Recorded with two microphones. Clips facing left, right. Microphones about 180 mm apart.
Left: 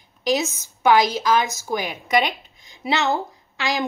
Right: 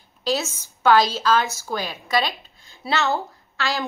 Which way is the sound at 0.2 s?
15° left (ahead or behind).